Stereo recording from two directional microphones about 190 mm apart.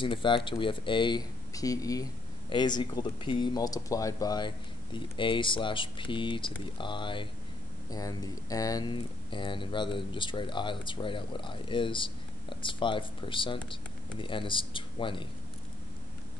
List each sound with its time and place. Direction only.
0.0 s speech: 25° left (ahead or behind)